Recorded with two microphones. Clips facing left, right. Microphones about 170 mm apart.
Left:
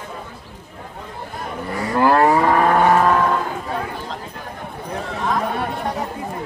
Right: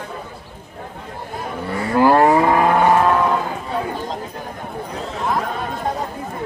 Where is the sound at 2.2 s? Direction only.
15° right (ahead or behind).